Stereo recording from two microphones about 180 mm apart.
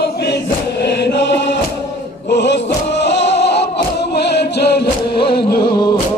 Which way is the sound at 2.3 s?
75° left (ahead or behind).